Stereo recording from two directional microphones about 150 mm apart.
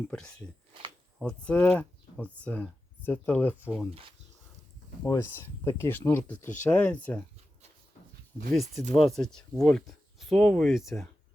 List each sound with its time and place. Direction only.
0.1 s speech: 5° left (ahead or behind)
5.0 s speech: 15° left (ahead or behind)
8.9 s speech: centre (ahead or behind)